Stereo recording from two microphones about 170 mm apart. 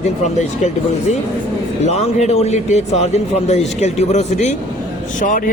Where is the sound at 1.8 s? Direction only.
40° left (ahead or behind).